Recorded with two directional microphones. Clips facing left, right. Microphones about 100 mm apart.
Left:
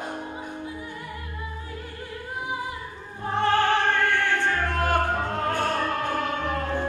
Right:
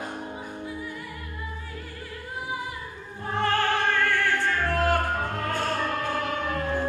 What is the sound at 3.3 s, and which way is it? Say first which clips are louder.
Music: left 3 dB; 20° left (ahead or behind).